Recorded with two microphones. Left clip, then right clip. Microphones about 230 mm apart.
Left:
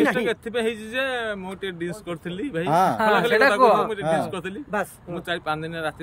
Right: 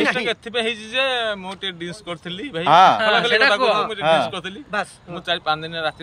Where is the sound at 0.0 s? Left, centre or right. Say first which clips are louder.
Right 1 dB; centre.